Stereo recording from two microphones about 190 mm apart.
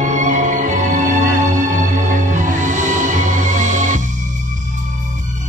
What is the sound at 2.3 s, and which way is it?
Music, 40° right (ahead or behind).